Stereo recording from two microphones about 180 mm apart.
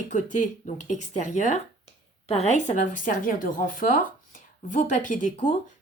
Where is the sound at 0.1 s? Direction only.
45° left (ahead or behind).